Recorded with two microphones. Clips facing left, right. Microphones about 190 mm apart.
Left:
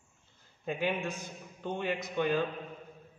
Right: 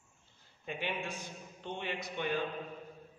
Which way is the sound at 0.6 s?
45° left (ahead or behind).